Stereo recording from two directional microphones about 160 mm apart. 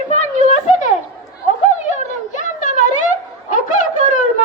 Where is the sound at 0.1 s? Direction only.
45° left (ahead or behind).